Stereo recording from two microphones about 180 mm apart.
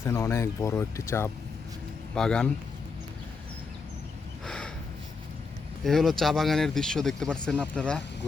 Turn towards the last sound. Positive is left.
turn(degrees=5)  # may be behind; listen again after turning